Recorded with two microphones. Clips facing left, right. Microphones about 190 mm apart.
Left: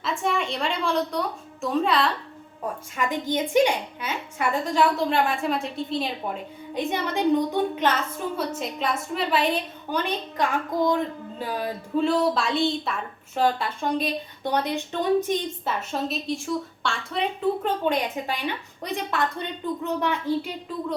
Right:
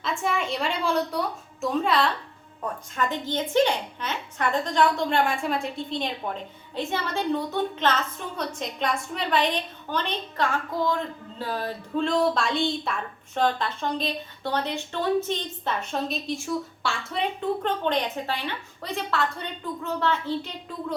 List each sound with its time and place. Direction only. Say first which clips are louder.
0.0 s a woman's voice: left 1 dB; centre (ahead or behind)
2.9 s a woman's voice: left 2 dB; 10° left (ahead or behind)
6.7 s a woman's voice: left 2 dB; 15° left (ahead or behind)